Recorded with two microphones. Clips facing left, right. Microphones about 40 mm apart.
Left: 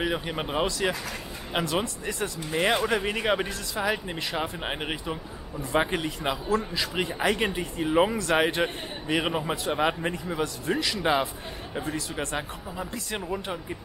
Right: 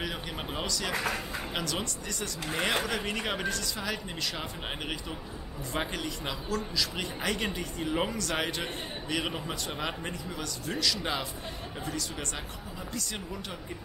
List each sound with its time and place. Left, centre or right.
0.0 s speech: left